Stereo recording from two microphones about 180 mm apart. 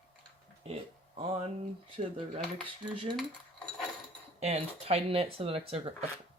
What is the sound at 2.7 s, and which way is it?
Cutlery, 30° right (ahead or behind).